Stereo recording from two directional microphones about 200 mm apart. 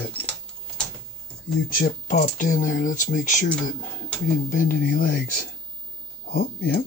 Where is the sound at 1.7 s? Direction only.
45° left (ahead or behind).